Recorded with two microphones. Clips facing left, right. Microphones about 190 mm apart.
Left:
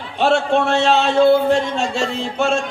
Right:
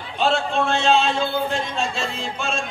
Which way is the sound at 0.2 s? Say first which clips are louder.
Left 5 dB; 65° left (ahead or behind).